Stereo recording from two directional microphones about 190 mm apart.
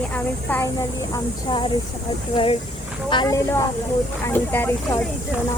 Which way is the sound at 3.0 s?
20° left (ahead or behind).